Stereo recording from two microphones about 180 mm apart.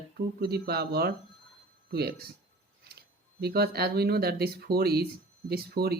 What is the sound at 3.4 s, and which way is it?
Speech, 60° right (ahead or behind).